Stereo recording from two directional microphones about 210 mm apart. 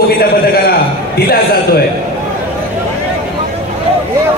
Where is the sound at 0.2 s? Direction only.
45° left (ahead or behind).